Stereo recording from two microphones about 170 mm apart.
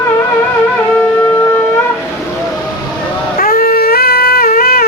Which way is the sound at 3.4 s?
55° left (ahead or behind).